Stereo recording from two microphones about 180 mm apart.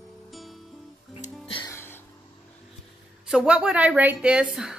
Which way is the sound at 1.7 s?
15° left (ahead or behind).